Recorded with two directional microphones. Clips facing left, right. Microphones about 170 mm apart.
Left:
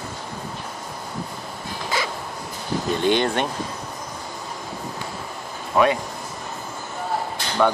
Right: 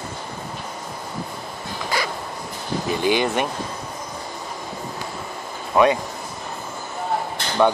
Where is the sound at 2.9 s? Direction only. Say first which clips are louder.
Even; 5° right (ahead or behind).